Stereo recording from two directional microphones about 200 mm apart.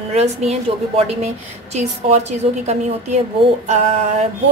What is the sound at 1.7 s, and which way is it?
A woman's voice, 35° right (ahead or behind).